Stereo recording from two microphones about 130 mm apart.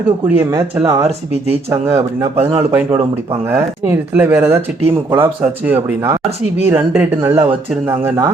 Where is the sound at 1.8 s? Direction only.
20° right (ahead or behind).